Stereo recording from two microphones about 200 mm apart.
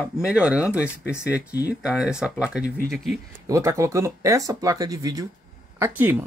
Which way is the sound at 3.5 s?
15° right (ahead or behind).